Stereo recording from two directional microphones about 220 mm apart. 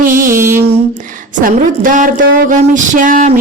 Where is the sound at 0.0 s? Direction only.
40° right (ahead or behind).